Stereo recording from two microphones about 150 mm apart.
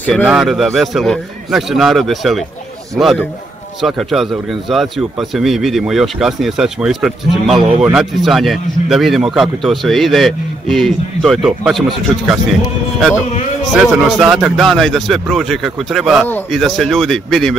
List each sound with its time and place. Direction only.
0.0 s a man's voice: 10° left (ahead or behind)
7.5 s a man's voice: 40° right (ahead or behind)
7.8 s a man's voice: 5° right (ahead or behind)
13.7 s a man's voice: centre (ahead or behind)